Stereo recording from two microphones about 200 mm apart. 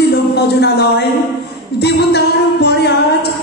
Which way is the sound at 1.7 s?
55° left (ahead or behind).